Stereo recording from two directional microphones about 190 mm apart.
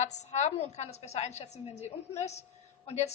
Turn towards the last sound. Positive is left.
turn(degrees=35)  # may be behind; listen again after turning